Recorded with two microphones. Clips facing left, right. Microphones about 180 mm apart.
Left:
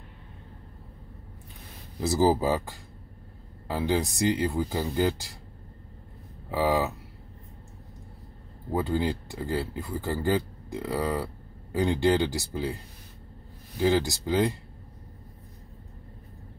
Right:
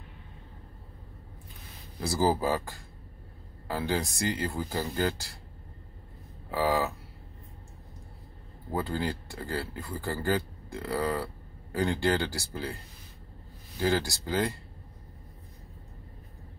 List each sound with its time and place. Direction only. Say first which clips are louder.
2.0 s speech: left 4 dB; 20° left (ahead or behind)
6.5 s speech: left 2 dB; 20° left (ahead or behind)
8.7 s speech: left 4 dB; 20° left (ahead or behind)
13.7 s speech: left 4 dB; 20° left (ahead or behind)